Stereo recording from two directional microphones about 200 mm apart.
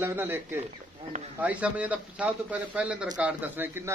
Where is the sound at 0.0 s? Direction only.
10° right (ahead or behind).